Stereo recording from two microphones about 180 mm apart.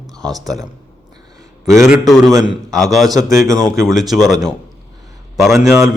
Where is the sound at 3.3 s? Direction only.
15° right (ahead or behind).